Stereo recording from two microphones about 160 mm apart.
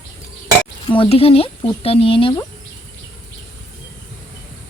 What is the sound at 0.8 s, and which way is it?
Speech, 30° left (ahead or behind).